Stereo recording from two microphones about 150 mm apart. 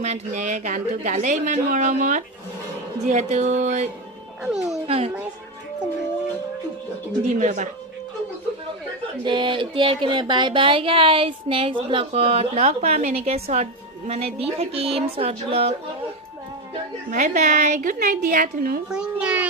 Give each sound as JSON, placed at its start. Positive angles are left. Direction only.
{"t": 0.0, "sound": "speech", "side_deg": -50}
{"t": 3.1, "sound": "music", "side_deg": -50}
{"t": 4.4, "sound": "speech", "side_deg": -5}
{"t": 4.9, "sound": "speech", "side_deg": -40}
{"t": 7.3, "sound": "speech", "side_deg": -55}
{"t": 9.2, "sound": "speech", "side_deg": -30}
{"t": 13.2, "sound": "music", "side_deg": -45}
{"t": 14.1, "sound": "speech", "side_deg": -40}
{"t": 17.1, "sound": "speech", "side_deg": -55}
{"t": 18.9, "sound": "a child's voice", "side_deg": -5}